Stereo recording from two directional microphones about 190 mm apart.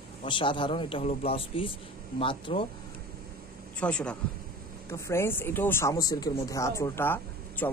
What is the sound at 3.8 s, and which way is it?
A man's voice, 5° left (ahead or behind).